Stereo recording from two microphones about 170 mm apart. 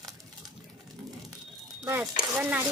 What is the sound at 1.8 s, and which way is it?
Speech, 10° right (ahead or behind).